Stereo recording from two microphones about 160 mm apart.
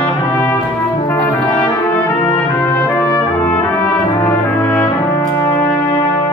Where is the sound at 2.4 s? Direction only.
10° left (ahead or behind).